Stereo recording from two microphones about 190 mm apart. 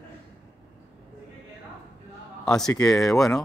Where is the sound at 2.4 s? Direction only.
5° left (ahead or behind).